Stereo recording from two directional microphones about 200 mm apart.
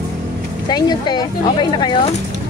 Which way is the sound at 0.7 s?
20° left (ahead or behind).